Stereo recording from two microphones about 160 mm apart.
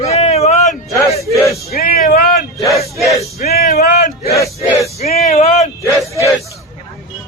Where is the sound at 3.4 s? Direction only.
80° left.